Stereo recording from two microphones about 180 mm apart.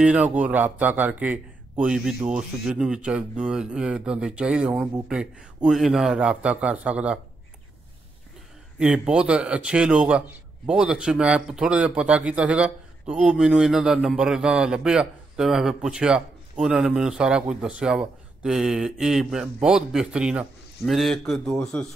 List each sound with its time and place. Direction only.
0.0 s speech: 5° right (ahead or behind)
8.7 s speech: 5° right (ahead or behind)